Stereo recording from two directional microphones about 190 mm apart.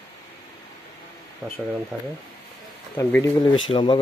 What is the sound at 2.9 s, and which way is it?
Speech, 10° left (ahead or behind).